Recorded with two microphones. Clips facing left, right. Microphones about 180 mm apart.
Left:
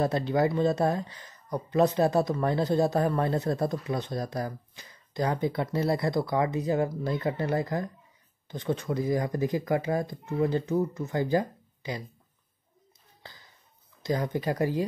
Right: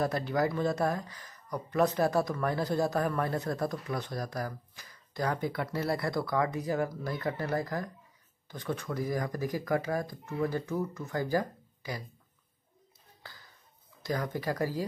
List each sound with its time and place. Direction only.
0.0 s speech: 25° left (ahead or behind)
13.2 s a sound: 20° left (ahead or behind)
14.0 s speech: 20° left (ahead or behind)